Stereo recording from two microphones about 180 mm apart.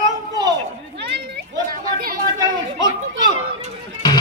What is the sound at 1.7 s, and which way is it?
Chatter, 50° right (ahead or behind).